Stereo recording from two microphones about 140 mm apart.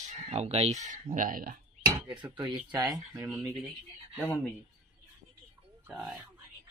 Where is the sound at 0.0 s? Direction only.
50° right (ahead or behind); by 1.6 s 85° right.